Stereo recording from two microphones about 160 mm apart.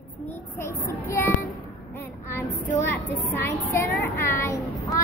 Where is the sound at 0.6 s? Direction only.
15° left (ahead or behind).